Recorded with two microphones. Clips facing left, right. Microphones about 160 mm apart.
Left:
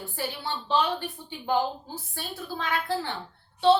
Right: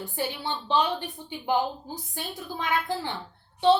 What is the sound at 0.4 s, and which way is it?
Speech, 15° right (ahead or behind).